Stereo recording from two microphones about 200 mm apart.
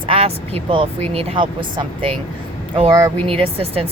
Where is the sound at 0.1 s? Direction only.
30° right (ahead or behind).